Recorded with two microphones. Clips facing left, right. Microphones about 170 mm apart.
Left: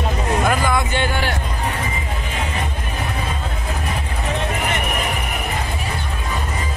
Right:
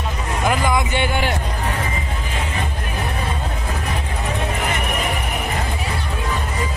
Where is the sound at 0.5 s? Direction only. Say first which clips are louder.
Even; 15° right (ahead or behind).